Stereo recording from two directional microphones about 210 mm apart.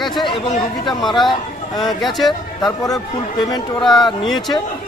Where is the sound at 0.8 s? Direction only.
Centre (ahead or behind).